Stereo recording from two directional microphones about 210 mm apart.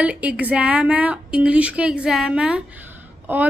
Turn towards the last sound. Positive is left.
turn(degrees=-10)  # may be behind; listen again after turning